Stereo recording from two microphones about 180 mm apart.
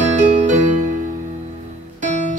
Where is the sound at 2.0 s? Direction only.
40° right (ahead or behind).